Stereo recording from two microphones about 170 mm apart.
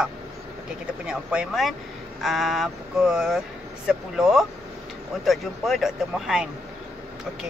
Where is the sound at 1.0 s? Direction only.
5° right (ahead or behind).